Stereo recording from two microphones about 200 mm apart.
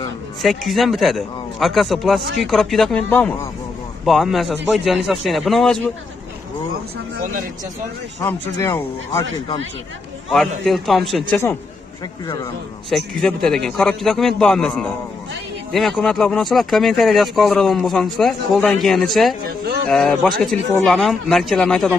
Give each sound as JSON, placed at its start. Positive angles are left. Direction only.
{"t": 0.4, "sound": "speech", "side_deg": 0}
{"t": 8.6, "sound": "speech", "side_deg": 15}
{"t": 10.3, "sound": "speech", "side_deg": 0}
{"t": 12.9, "sound": "speech", "side_deg": 0}
{"t": 19.4, "sound": "speech", "side_deg": -50}
{"t": 19.9, "sound": "speech", "side_deg": 5}